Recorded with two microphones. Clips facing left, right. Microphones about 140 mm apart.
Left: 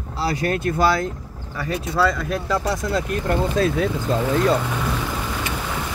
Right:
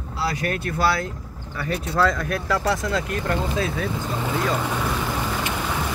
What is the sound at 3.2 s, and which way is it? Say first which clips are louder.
Speech: left 4 dB; 30° left (ahead or behind).